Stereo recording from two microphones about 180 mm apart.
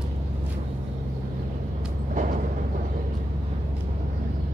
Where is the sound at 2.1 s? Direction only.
45° right (ahead or behind).